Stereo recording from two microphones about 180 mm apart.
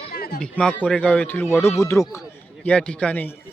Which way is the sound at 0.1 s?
55° left (ahead or behind).